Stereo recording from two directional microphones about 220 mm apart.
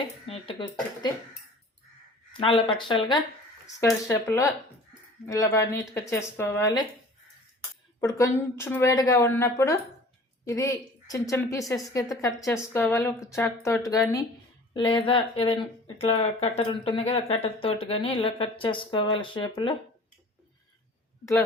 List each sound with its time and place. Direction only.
0.3 s speech: 25° left (ahead or behind)
2.3 s a woman's voice: 25° left (ahead or behind)
8.0 s a woman's voice: 15° left (ahead or behind)